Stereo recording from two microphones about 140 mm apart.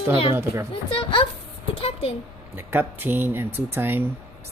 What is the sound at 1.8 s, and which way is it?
Speech, 45° left (ahead or behind).